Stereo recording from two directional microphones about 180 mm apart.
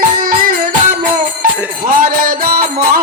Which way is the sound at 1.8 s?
50° right (ahead or behind).